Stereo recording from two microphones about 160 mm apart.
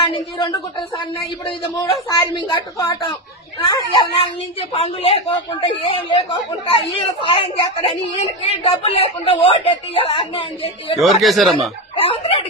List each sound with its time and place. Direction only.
0.0 s speech: 30° left (ahead or behind)
4.7 s a woman's voice: 40° left (ahead or behind)
11.0 s speech: centre (ahead or behind)
11.9 s a woman's voice: 35° left (ahead or behind)